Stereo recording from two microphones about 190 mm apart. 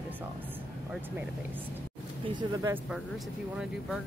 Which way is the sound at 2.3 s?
20° right (ahead or behind).